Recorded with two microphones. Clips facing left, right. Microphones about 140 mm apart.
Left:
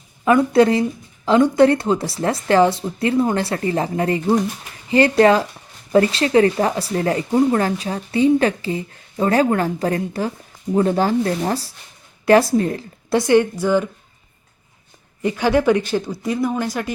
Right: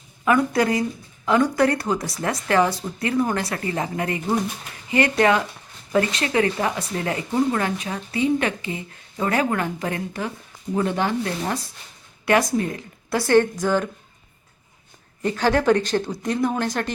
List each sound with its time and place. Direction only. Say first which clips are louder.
0.3 s a woman's voice: left 5 dB; 25° left (ahead or behind)
13.1 s speech: left 3 dB; 15° left (ahead or behind)
15.2 s speech: left 3 dB; 10° left (ahead or behind)